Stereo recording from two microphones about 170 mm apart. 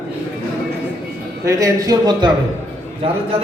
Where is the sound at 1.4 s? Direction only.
20° right (ahead or behind).